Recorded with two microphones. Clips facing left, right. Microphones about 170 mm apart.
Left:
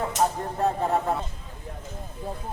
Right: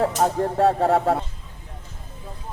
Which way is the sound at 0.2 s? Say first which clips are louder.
Right 2 dB; 60° right (ahead or behind).